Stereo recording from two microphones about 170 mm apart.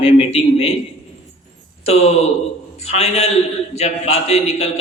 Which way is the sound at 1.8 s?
40° left (ahead or behind).